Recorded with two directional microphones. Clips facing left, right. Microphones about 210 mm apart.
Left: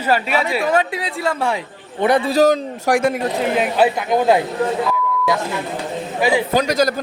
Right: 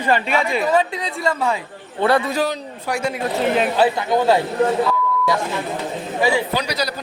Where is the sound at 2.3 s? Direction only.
40° left (ahead or behind).